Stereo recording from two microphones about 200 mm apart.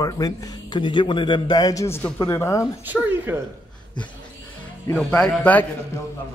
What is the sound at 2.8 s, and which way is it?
Speech, 10° right (ahead or behind).